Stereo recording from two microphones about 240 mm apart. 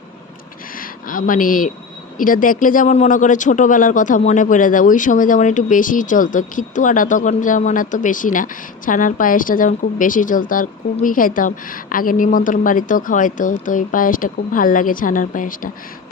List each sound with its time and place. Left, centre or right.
0.8 s speech: left